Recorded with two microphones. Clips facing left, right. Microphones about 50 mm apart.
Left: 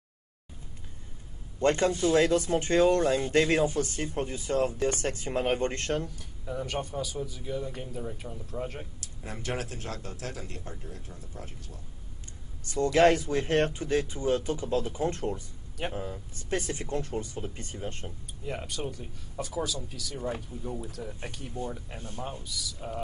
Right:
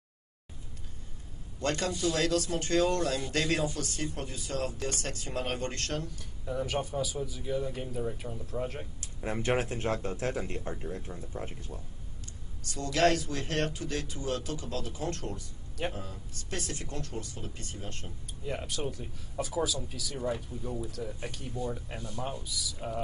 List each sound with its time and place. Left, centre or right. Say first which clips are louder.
1.6 s speech: left 6 dB; left
6.0 s a man's voice: even; centre
9.0 s speech: right 8 dB; right
12.6 s speech: left 5 dB; left
18.4 s a man's voice: even; centre
20.5 s speech: even; left
20.9 s a man's voice: right 1 dB; centre